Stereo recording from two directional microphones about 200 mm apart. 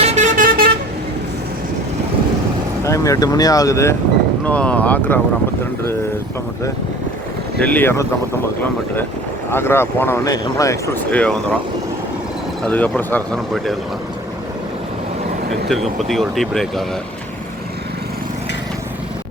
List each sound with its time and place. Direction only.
0.0 s vehicle: 35° right (ahead or behind)
2.8 s speech: 15° left (ahead or behind)
7.6 s speech: 10° left (ahead or behind)
9.5 s speech: 10° left (ahead or behind)
12.6 s speech: 5° left (ahead or behind)
15.7 s speech: centre (ahead or behind)